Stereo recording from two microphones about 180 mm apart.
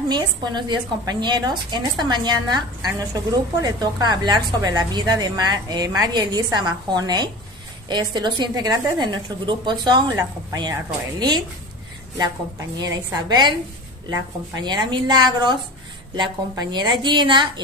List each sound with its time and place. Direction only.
0.1 s a woman's voice: 25° right (ahead or behind)
12.7 s a woman's voice: 20° right (ahead or behind)